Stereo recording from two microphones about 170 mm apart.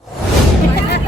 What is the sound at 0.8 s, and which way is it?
Music, 70° left (ahead or behind).